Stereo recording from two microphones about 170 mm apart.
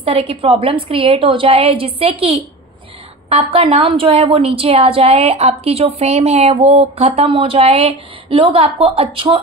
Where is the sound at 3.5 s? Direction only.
35° right (ahead or behind).